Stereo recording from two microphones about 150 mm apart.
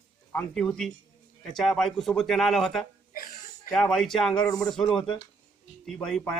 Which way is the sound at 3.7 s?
5° left (ahead or behind).